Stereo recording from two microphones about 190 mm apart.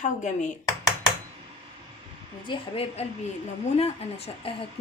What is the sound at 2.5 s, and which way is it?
Speech, 30° left (ahead or behind).